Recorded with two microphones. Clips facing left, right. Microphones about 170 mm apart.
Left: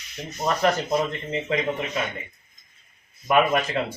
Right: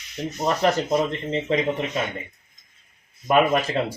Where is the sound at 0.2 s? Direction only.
30° right (ahead or behind).